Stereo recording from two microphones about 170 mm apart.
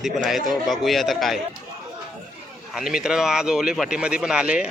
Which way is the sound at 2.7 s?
5° right (ahead or behind).